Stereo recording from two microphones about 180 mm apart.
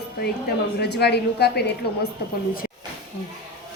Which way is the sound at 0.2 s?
65° left (ahead or behind).